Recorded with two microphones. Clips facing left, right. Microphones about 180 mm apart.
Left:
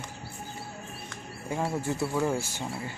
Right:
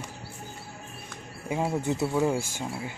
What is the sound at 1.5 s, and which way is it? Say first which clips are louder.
Speech: right 2 dB; 15° right (ahead or behind).